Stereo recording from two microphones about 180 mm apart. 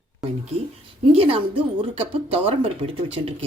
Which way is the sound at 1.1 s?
30° right (ahead or behind).